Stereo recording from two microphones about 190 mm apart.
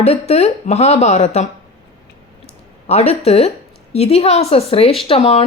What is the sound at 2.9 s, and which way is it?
Speech, 35° left (ahead or behind).